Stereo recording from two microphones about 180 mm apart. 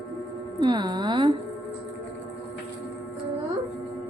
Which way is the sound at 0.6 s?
25° right (ahead or behind).